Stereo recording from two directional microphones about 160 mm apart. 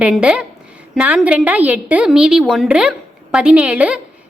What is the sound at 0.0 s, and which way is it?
A woman's voice, 5° right (ahead or behind).